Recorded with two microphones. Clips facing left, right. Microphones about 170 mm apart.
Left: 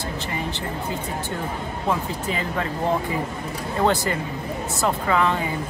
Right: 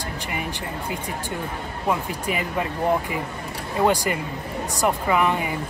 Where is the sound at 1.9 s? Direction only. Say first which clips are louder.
Right 1 dB; 15° right (ahead or behind).